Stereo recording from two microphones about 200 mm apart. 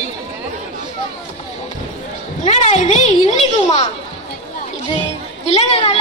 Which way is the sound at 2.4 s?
35° left (ahead or behind).